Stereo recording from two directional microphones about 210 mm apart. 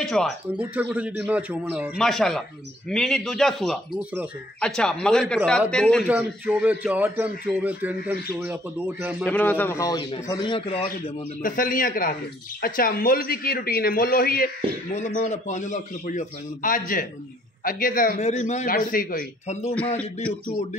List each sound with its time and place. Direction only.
0.0 s a man's voice: centre (ahead or behind)
4.6 s a man's voice: 5° left (ahead or behind)
6.0 s a man's voice: 10° right (ahead or behind)
9.2 s a man's voice: 10° left (ahead or behind); by 11.1 s 25° left (ahead or behind)
11.4 s a man's voice: 40° left (ahead or behind)